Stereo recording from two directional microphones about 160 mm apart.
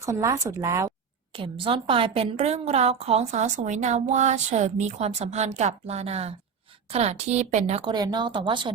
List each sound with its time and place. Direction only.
0.0 s a woman's voice: 20° right (ahead or behind)
1.3 s a woman's voice: 35° right (ahead or behind)
7.9 s a woman's voice: 25° right (ahead or behind)